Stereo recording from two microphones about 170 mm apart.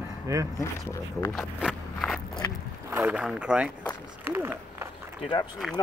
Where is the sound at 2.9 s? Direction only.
5° right (ahead or behind).